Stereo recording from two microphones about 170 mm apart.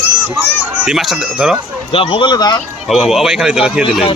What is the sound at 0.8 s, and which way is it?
Speech, 5° right (ahead or behind).